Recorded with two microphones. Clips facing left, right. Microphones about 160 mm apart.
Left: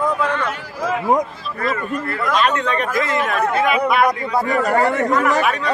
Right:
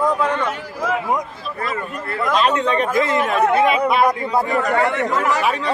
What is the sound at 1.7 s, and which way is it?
Speech, 20° right (ahead or behind).